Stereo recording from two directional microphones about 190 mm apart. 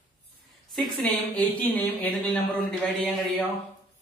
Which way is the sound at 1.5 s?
10° left (ahead or behind).